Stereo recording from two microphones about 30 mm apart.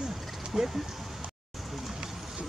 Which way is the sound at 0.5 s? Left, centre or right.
Centre.